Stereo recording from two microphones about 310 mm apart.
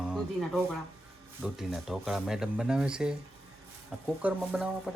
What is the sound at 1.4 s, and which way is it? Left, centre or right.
Speech, centre.